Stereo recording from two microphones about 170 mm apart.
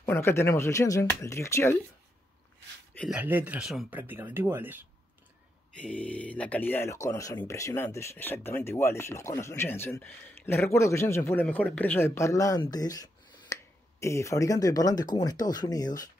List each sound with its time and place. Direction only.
0.0 s speech: 15° left (ahead or behind)
3.1 s speech: 10° right (ahead or behind)
5.8 s speech: 5° left (ahead or behind)